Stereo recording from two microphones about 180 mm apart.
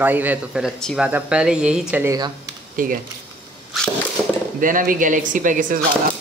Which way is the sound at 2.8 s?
50° right (ahead or behind).